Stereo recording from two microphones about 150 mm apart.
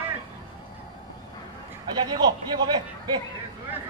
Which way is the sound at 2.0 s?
30° right (ahead or behind).